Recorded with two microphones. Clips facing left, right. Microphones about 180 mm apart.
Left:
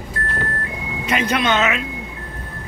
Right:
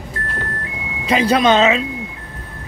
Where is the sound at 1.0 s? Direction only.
35° right (ahead or behind).